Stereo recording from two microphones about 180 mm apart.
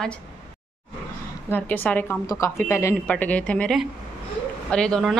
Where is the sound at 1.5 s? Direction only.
10° left (ahead or behind).